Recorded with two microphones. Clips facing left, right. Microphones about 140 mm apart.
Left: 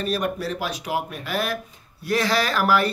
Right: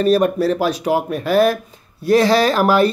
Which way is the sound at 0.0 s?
35° right (ahead or behind).